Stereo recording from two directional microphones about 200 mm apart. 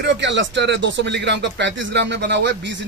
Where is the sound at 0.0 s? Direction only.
65° right (ahead or behind).